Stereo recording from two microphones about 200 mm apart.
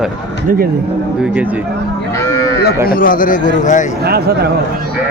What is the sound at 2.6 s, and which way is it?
A man's voice, 50° left (ahead or behind).